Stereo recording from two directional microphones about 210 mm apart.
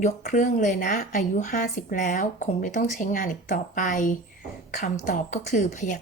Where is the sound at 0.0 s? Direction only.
35° left (ahead or behind).